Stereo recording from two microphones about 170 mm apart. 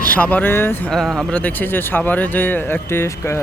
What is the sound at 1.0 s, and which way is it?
Speech, centre (ahead or behind).